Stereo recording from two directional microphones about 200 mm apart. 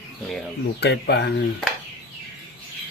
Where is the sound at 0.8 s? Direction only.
55° left (ahead or behind).